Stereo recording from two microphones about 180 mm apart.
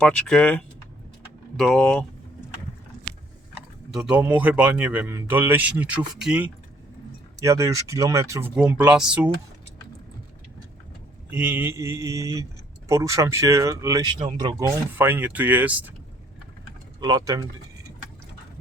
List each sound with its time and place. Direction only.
0.0 s speech: 5° left (ahead or behind)
3.9 s speech: 5° right (ahead or behind)
7.4 s speech: 15° right (ahead or behind)
11.3 s speech: 10° right (ahead or behind)
14.9 s speech: 10° right (ahead or behind)
17.0 s speech: 25° right (ahead or behind)